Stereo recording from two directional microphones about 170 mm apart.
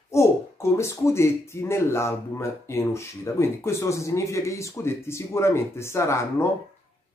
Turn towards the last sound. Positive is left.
turn(degrees=15)  # may be behind; listen again after turning